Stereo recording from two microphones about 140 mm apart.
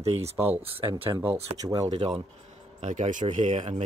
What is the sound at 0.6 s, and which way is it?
Speech, 40° right (ahead or behind).